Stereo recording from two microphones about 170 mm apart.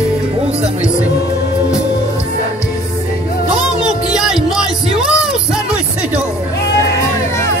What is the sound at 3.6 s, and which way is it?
Music, 25° left (ahead or behind).